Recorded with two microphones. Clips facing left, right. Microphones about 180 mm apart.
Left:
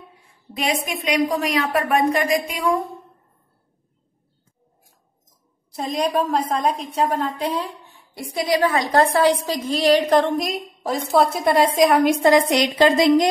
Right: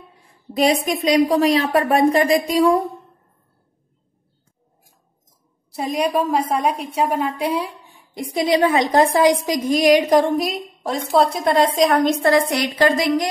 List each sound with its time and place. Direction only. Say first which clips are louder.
0.6 s a woman's voice: right 7 dB; 35° right (ahead or behind)
5.8 s a woman's voice: right 1 dB; 10° right (ahead or behind); by 13.3 s 20° left (ahead or behind)